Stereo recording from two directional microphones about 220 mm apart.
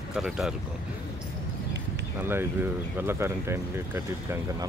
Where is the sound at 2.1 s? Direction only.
10° right (ahead or behind).